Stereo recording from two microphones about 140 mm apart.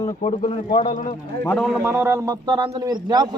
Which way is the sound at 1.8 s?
15° right (ahead or behind).